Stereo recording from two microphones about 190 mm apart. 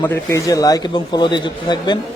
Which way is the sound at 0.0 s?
15° left (ahead or behind).